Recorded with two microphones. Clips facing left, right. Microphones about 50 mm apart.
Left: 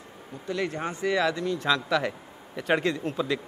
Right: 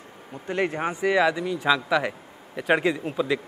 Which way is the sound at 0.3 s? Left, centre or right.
Right.